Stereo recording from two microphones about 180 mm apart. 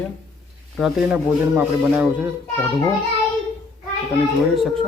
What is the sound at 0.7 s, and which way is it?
Speech, centre (ahead or behind).